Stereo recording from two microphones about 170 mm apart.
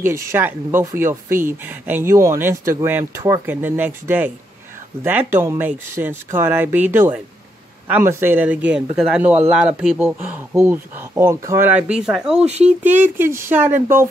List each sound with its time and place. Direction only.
0.0 s speech: 15° right (ahead or behind)
12.4 s speech: 40° right (ahead or behind)
12.8 s speech: 10° right (ahead or behind)